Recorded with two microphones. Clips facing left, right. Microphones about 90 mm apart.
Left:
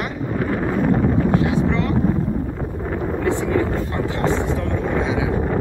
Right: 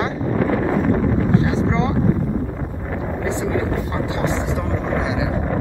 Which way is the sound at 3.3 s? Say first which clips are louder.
Left 2 dB; 20° right (ahead or behind).